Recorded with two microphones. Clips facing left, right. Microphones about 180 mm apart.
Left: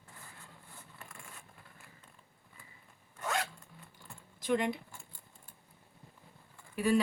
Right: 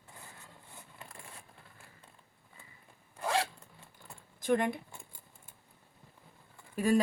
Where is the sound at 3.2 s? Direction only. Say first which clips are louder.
Right 4 dB; 30° right (ahead or behind).